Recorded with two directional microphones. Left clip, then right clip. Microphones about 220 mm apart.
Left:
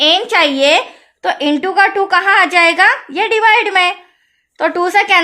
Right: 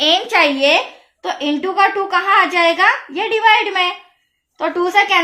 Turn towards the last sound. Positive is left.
turn(degrees=45)  # may be behind; listen again after turning